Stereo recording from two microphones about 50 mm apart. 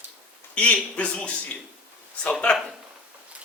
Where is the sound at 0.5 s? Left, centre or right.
Left.